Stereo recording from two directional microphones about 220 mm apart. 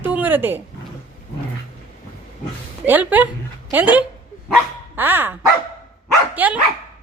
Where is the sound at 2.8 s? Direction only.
10° right (ahead or behind).